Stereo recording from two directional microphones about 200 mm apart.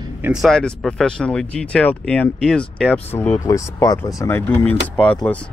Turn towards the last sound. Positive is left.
turn(degrees=5)  # may be behind; listen again after turning